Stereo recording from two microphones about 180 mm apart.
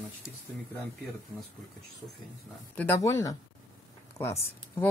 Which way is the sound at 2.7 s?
10° left (ahead or behind).